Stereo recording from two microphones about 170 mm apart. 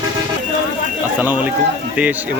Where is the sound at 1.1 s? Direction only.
10° right (ahead or behind).